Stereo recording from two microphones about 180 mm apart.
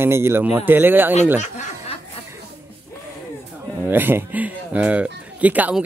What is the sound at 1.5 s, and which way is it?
Snicker, 40° left (ahead or behind).